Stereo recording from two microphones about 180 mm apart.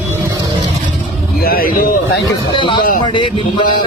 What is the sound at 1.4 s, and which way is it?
Speech, 55° left (ahead or behind).